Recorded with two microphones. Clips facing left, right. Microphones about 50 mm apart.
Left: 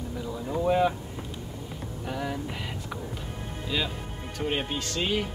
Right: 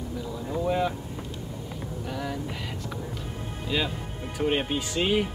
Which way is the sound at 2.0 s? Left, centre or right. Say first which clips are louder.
Left 1 dB; centre.